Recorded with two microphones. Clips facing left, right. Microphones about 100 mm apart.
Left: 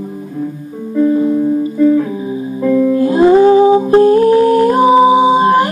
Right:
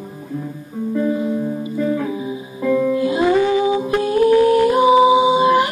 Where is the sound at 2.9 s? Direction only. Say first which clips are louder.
Left 7 dB; 40° left (ahead or behind).